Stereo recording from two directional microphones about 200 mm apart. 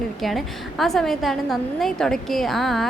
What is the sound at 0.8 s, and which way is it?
A woman's voice, centre (ahead or behind).